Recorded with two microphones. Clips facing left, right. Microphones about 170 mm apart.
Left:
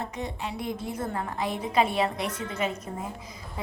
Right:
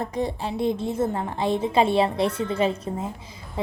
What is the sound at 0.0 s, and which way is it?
A woman's voice, 35° right (ahead or behind).